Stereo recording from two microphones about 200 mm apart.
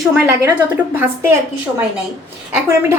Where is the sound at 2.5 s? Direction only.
10° right (ahead or behind).